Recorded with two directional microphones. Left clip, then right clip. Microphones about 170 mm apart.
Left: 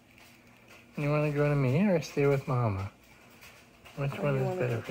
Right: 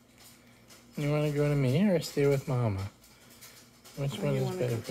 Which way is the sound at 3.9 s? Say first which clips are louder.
Left 1 dB; 25° right (ahead or behind).